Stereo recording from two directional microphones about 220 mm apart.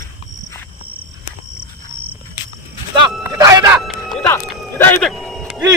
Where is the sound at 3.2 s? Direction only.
15° right (ahead or behind).